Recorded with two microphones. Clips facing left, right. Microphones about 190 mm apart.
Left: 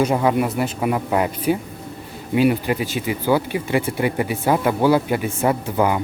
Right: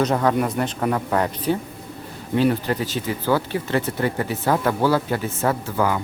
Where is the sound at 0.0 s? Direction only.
10° left (ahead or behind).